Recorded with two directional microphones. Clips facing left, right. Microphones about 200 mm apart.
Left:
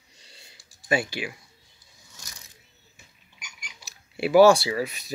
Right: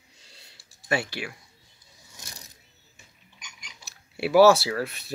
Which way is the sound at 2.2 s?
20° right (ahead or behind).